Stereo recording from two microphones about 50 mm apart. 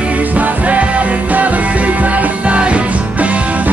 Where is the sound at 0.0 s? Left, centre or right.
Right.